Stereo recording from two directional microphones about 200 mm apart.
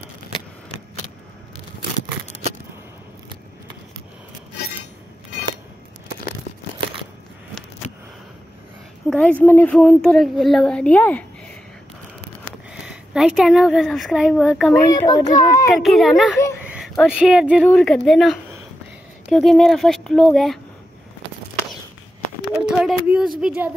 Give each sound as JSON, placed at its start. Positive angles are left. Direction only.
{"t": 9.1, "sound": "a woman's voice", "side_deg": 5}
{"t": 12.8, "sound": "a woman's voice", "side_deg": -5}
{"t": 14.9, "sound": "a child's voice", "side_deg": 20}
{"t": 15.7, "sound": "a woman's voice", "side_deg": 0}
{"t": 22.6, "sound": "speech", "side_deg": -5}